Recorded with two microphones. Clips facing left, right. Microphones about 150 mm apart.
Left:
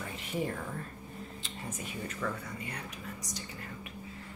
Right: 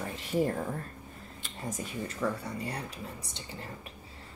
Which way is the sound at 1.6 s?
35° right (ahead or behind).